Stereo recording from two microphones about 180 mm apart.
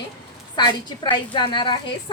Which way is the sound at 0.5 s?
25° left (ahead or behind).